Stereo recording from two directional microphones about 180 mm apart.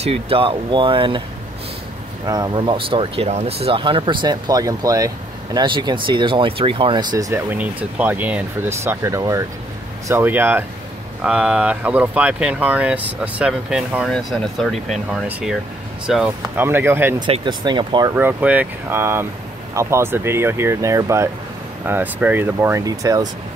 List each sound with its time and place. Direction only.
0.0 s speech: 35° right (ahead or behind)
2.2 s speech: 20° right (ahead or behind); by 16.6 s centre (ahead or behind)
16.6 s speech: 15° right (ahead or behind)
17.3 s speech: 25° right (ahead or behind)
18.1 s speech: 10° right (ahead or behind)